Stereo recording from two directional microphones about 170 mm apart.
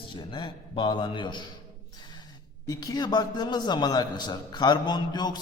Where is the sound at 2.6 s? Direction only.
20° left (ahead or behind).